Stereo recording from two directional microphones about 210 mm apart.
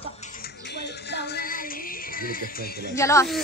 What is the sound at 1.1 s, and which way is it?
Music, 45° left (ahead or behind).